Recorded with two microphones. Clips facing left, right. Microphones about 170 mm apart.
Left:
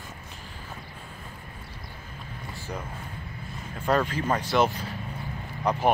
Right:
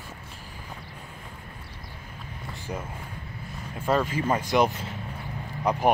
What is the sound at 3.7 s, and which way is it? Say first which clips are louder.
Speech: even; 5° right (ahead or behind).